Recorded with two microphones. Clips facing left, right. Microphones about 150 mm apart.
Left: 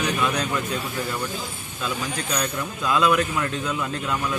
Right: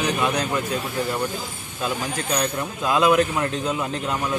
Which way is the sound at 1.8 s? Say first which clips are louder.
Right 2 dB; 25° right (ahead or behind).